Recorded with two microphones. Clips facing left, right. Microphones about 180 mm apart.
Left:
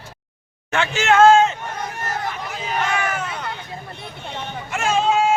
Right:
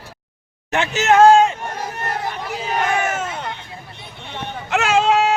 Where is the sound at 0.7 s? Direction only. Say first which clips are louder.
Right 2 dB; 20° right (ahead or behind).